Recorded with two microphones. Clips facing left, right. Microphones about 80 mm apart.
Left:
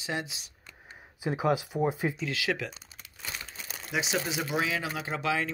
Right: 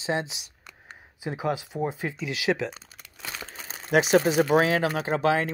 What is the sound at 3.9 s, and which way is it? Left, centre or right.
Speech, right.